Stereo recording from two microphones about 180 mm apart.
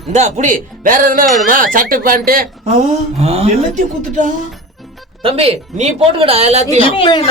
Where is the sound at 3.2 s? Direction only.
35° right (ahead or behind).